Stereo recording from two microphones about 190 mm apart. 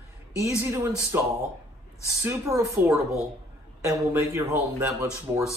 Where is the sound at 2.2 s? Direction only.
15° right (ahead or behind).